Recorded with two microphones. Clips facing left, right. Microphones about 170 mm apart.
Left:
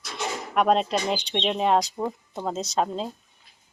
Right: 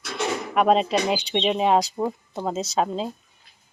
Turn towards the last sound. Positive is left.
turn(degrees=0)  # may be behind; listen again after turning